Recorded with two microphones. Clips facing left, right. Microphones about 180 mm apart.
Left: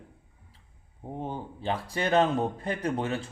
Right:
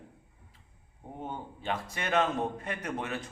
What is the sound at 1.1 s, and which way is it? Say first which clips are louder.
A man's voice: left 4 dB; 30° left (ahead or behind).